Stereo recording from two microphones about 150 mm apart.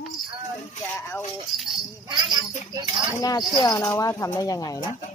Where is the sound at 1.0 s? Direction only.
15° left (ahead or behind).